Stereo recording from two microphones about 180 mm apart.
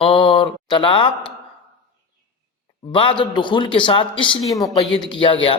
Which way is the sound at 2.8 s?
25° left (ahead or behind).